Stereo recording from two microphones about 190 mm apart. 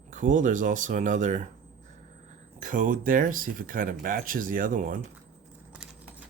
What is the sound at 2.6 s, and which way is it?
Speech, 45° right (ahead or behind).